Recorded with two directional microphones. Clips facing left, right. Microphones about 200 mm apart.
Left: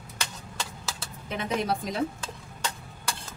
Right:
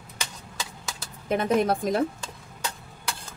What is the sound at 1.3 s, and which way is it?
Speech, 50° right (ahead or behind).